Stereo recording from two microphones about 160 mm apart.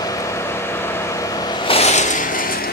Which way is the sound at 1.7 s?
40° left (ahead or behind).